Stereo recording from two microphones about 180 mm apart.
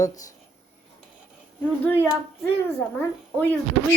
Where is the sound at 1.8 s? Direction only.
10° left (ahead or behind).